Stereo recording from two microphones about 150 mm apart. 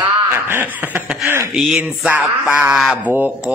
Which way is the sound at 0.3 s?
15° right (ahead or behind).